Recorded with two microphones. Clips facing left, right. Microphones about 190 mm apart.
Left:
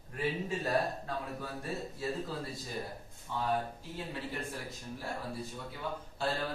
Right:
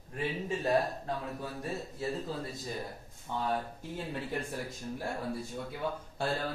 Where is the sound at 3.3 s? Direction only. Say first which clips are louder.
Right 1 dB; 55° right (ahead or behind).